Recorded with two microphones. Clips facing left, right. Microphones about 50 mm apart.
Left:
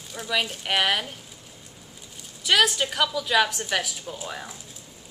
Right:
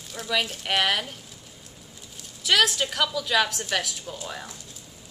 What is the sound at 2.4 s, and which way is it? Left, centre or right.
A woman's voice, centre.